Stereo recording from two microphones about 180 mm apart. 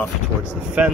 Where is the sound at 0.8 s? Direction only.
10° right (ahead or behind).